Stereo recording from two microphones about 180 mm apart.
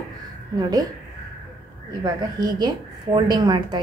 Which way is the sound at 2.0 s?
25° right (ahead or behind).